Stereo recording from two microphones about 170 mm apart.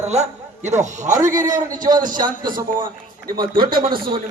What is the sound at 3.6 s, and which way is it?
Speech, 60° right (ahead or behind).